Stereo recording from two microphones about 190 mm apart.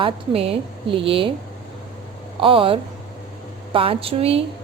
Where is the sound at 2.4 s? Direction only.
25° right (ahead or behind).